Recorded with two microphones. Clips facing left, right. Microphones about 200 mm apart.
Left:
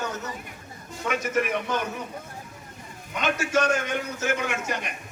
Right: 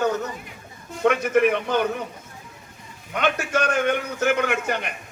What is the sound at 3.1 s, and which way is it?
A man's voice, 60° right (ahead or behind).